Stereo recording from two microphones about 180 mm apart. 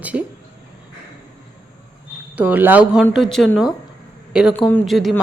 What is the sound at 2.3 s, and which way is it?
A woman's voice, 10° right (ahead or behind).